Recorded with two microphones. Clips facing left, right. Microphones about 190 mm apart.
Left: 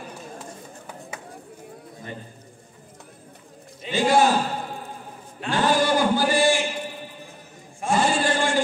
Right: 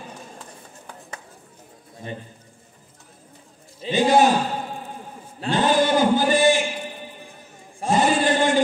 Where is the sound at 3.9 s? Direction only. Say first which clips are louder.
Right 2 dB; 20° right (ahead or behind).